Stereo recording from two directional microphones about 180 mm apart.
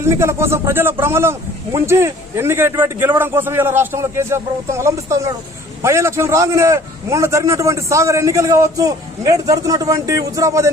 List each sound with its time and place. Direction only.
0.0 s a man's voice: 15° right (ahead or behind)